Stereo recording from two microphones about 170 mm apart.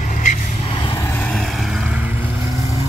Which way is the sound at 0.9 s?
15° left (ahead or behind).